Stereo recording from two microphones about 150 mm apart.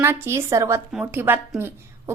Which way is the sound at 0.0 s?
15° right (ahead or behind).